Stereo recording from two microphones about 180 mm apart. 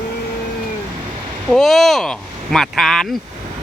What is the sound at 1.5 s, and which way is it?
Speech, centre (ahead or behind).